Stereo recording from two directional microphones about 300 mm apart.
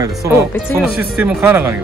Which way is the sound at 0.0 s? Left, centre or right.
Centre.